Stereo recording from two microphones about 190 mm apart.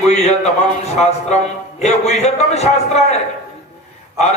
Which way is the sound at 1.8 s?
35° left (ahead or behind).